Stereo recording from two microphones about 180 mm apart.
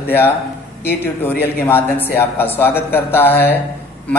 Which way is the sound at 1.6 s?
10° left (ahead or behind).